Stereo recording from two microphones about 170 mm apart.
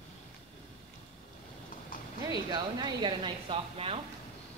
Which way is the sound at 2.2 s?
20° right (ahead or behind).